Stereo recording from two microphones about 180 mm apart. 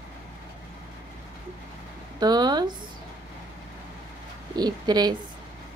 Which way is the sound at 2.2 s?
25° right (ahead or behind).